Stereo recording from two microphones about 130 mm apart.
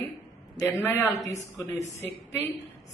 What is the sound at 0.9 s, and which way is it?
Speech, 15° left (ahead or behind).